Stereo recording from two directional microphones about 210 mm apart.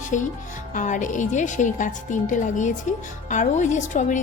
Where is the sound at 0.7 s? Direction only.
35° left (ahead or behind).